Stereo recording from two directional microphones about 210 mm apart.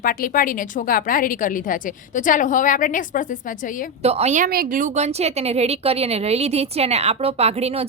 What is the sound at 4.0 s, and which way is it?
A woman's voice, 30° right (ahead or behind).